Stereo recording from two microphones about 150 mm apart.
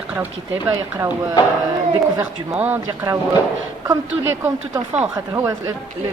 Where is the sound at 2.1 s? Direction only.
15° right (ahead or behind).